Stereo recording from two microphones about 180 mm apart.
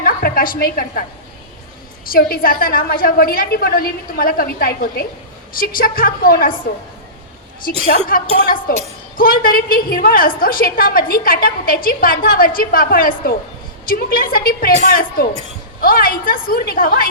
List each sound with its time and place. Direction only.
0.0 s a woman's voice: 55° left (ahead or behind)
2.0 s a woman's voice: 55° left (ahead or behind)
7.7 s a woman's voice: 35° right (ahead or behind)
8.0 s a woman's voice: 55° left (ahead or behind)